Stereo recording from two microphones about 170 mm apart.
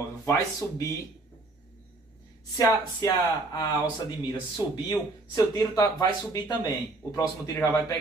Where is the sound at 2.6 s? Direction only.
25° left (ahead or behind).